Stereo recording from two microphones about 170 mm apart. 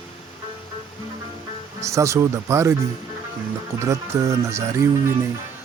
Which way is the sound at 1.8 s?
15° right (ahead or behind).